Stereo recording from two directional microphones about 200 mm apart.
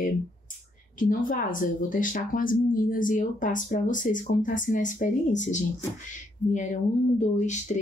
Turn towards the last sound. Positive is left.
turn(degrees=35)  # may be behind; listen again after turning